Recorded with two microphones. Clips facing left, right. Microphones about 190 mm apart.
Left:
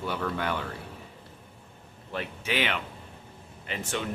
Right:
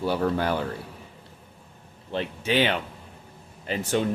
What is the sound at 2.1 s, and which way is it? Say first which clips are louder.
Speech: right 6 dB; 30° right (ahead or behind).